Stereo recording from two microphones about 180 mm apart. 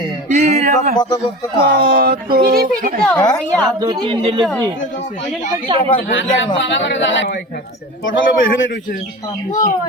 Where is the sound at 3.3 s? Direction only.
5° left (ahead or behind).